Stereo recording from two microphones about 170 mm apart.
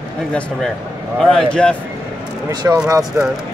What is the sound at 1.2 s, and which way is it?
Speech, 5° left (ahead or behind).